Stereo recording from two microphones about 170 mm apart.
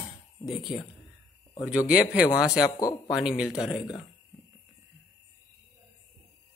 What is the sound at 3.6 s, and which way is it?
Speech, centre (ahead or behind).